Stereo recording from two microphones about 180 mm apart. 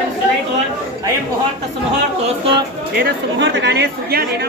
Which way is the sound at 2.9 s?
70° right (ahead or behind).